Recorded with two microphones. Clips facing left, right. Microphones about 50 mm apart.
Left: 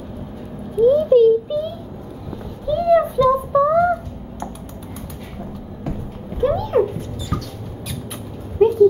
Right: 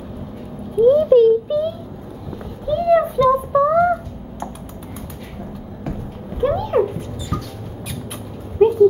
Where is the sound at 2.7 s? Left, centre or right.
Centre.